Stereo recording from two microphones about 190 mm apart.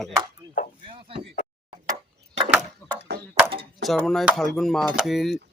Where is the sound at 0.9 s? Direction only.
30° right (ahead or behind).